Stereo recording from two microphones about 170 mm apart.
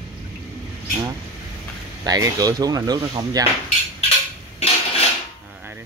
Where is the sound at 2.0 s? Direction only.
20° right (ahead or behind).